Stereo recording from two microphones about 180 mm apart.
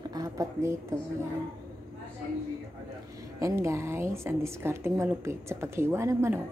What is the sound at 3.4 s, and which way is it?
A woman's voice, 15° right (ahead or behind).